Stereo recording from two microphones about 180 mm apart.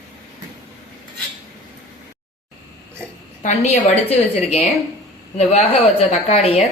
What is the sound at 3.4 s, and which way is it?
A woman's voice, 35° left (ahead or behind).